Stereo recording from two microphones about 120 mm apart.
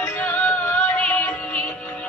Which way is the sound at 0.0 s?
15° left (ahead or behind).